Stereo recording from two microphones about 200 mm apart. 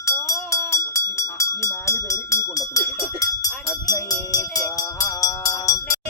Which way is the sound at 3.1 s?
15° left (ahead or behind).